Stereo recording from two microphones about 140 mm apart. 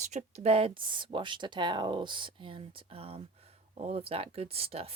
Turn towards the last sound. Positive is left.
turn(degrees=-45)  # may be behind; listen again after turning